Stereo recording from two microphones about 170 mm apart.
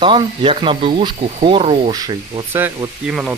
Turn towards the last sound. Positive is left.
turn(degrees=-5)  # may be behind; listen again after turning